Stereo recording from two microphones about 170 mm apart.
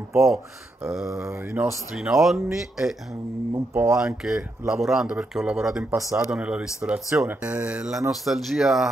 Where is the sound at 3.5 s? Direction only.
15° right (ahead or behind).